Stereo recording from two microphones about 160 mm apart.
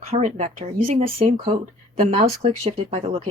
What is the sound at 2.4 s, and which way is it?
Speech, 45° right (ahead or behind).